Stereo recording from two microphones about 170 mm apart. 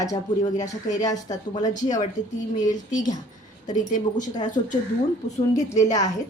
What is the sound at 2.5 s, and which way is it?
A woman's voice, 45° left (ahead or behind).